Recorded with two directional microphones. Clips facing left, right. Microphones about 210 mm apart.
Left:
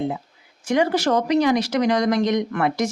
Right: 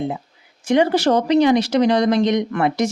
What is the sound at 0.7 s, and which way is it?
Speech, 25° right (ahead or behind).